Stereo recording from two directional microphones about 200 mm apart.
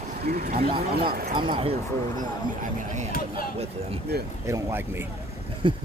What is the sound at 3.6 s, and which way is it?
Speech, 30° right (ahead or behind).